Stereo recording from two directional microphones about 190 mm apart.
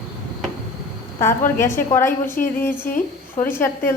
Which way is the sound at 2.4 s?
50° left (ahead or behind).